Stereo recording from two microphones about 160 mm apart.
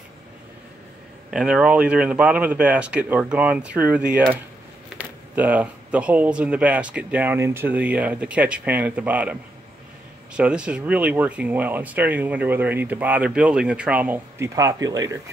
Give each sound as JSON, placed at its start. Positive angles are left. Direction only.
{"t": 1.3, "sound": "speech", "side_deg": -5}
{"t": 14.5, "sound": "speech", "side_deg": -20}